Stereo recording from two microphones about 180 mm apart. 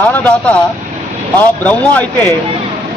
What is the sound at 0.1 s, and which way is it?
Speech, 10° left (ahead or behind).